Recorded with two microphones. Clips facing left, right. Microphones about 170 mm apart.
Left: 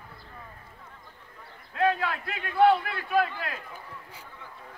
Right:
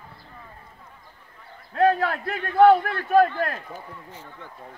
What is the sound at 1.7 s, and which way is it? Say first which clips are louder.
A man's voice: right 6 dB; 40° right (ahead or behind).